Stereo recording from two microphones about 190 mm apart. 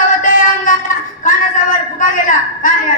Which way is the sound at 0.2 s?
45° left (ahead or behind).